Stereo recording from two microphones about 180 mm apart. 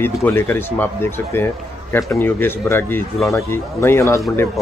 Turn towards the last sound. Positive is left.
turn(degrees=15)  # may be behind; listen again after turning